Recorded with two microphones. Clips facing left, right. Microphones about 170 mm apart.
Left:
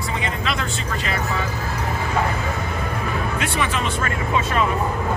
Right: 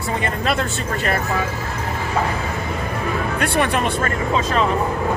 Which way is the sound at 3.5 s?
55° right (ahead or behind).